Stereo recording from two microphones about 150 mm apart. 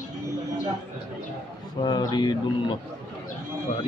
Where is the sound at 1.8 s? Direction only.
25° left (ahead or behind).